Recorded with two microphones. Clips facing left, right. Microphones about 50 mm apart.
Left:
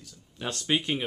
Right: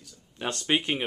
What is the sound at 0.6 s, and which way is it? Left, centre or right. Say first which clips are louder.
Speech: right 1 dB; right.